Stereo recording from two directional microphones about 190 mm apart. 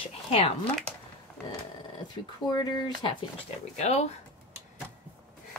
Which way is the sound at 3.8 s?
35° left (ahead or behind).